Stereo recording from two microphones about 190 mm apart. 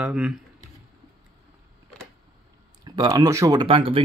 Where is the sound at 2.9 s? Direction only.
20° right (ahead or behind).